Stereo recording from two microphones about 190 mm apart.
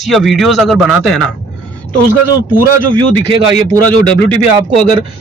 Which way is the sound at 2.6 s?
20° right (ahead or behind).